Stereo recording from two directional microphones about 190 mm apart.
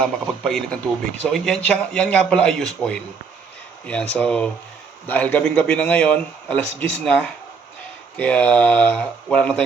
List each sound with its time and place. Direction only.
0.0 s a man's voice: 5° left (ahead or behind)
4.1 s a man's voice: 5° left (ahead or behind)